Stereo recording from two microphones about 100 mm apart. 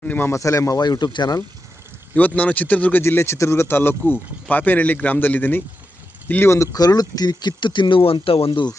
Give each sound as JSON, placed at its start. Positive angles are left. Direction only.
{"t": 0.0, "sound": "speech", "side_deg": 20}
{"t": 0.3, "sound": "speech", "side_deg": 30}
{"t": 2.1, "sound": "speech", "side_deg": 15}
{"t": 6.7, "sound": "speech", "side_deg": 40}